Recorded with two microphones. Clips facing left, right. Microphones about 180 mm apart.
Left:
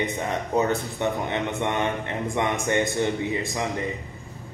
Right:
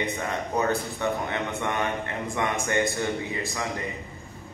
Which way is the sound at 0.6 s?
20° left (ahead or behind).